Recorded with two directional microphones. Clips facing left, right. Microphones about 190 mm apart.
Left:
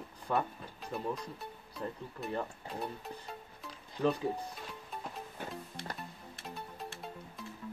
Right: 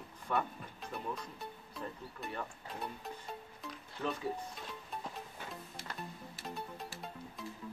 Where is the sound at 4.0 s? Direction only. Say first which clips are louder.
Left 7 dB; 15° left (ahead or behind).